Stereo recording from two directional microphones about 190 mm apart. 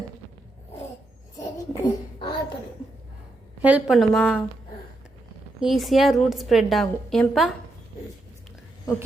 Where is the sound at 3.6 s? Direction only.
5° right (ahead or behind).